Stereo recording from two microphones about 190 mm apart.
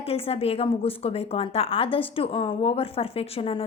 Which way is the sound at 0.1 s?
30° left (ahead or behind).